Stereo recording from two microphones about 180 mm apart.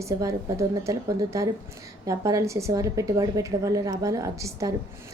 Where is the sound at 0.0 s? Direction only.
15° right (ahead or behind).